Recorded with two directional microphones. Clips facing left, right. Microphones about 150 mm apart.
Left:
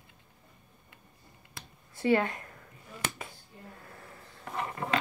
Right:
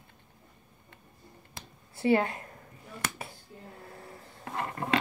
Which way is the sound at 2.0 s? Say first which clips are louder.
Right 1 dB; 30° right (ahead or behind).